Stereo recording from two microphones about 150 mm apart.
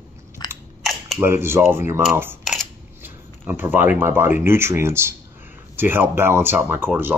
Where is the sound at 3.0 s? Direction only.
15° right (ahead or behind).